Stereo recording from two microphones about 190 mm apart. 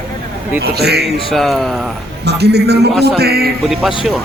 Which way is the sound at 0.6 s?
60° right (ahead or behind).